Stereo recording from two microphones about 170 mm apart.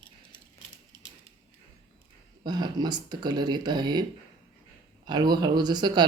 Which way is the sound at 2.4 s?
25° right (ahead or behind).